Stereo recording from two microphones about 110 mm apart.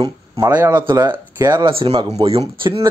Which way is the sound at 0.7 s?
40° right (ahead or behind).